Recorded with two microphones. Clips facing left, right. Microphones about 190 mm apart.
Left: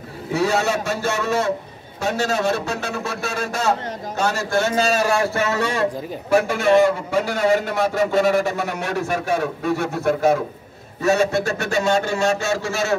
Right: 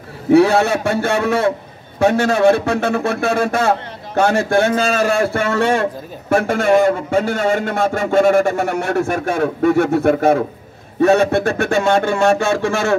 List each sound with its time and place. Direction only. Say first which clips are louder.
0.3 s a man's voice: right 8 dB; 60° right (ahead or behind)